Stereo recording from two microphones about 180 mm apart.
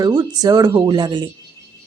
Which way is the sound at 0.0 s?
25° right (ahead or behind).